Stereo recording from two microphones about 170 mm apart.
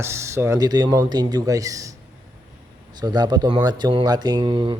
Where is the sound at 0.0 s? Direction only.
15° right (ahead or behind).